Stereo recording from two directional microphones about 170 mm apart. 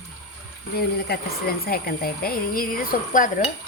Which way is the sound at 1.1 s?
65° left (ahead or behind).